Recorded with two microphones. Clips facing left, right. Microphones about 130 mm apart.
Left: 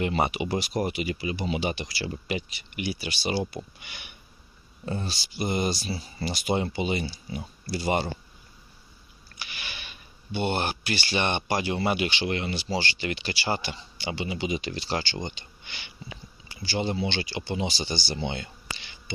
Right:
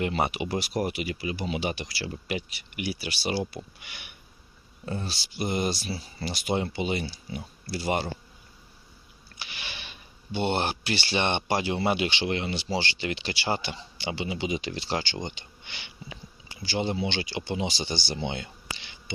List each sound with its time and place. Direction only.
0.0 s speech: centre (ahead or behind)
9.4 s a sound: 25° right (ahead or behind)
10.3 s speech: 25° right (ahead or behind)